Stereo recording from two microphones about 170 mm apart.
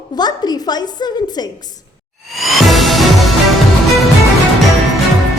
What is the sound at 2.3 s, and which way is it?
Music, centre (ahead or behind).